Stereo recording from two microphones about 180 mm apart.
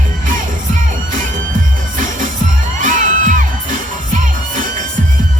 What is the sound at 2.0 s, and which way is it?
Music, 45° right (ahead or behind).